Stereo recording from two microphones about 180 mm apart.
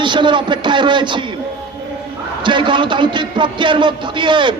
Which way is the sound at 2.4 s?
25° right (ahead or behind).